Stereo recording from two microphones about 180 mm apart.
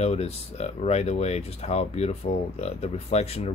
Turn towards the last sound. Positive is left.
turn(degrees=35)  # may be behind; listen again after turning